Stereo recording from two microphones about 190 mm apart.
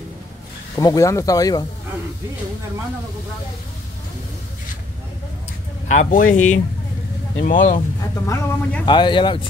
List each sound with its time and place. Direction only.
0.7 s speech: 20° left (ahead or behind)
5.9 s speech: 45° left (ahead or behind)
8.3 s speech: 10° left (ahead or behind)
8.8 s speech: 25° left (ahead or behind)